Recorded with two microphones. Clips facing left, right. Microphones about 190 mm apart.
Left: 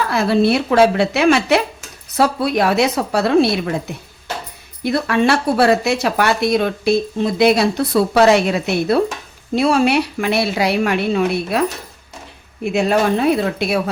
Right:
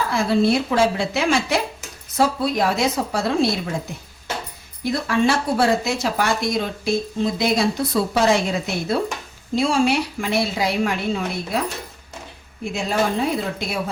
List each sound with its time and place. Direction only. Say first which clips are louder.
0.1 s speech: left 3 dB; 70° left (ahead or behind)
4.8 s speech: left 3 dB; 65° left (ahead or behind)
12.6 s speech: left 6 dB; 65° left (ahead or behind)